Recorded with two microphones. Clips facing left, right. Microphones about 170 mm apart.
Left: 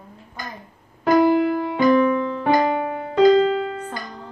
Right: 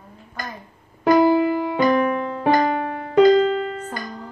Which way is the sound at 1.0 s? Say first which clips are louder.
Right 1 dB; 10° right (ahead or behind).